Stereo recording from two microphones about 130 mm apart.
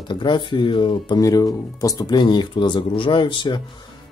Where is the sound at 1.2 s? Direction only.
25° left (ahead or behind).